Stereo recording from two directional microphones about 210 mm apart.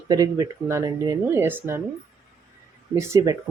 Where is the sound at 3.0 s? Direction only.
15° right (ahead or behind).